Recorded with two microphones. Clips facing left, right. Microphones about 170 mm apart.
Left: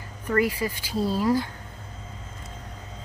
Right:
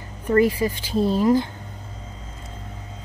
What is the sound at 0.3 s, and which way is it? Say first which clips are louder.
Speech: right 6 dB; 25° right (ahead or behind).